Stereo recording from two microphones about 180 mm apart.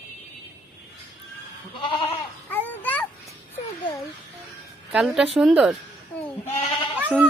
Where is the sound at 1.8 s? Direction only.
30° left (ahead or behind).